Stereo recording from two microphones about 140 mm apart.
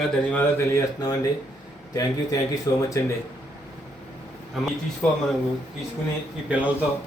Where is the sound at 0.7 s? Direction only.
25° left (ahead or behind).